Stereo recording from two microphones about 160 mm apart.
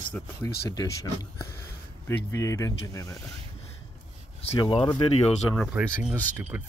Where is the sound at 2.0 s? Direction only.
20° left (ahead or behind).